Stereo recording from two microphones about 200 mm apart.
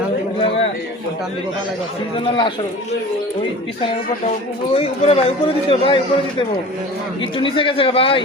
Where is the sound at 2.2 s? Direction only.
25° left (ahead or behind).